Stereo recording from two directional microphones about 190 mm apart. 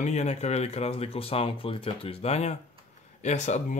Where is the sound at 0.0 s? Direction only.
35° left (ahead or behind).